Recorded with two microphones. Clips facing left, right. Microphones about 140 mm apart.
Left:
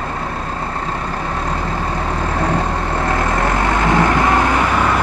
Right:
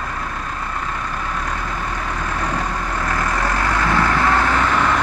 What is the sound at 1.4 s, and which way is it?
Vehicle, 30° left (ahead or behind).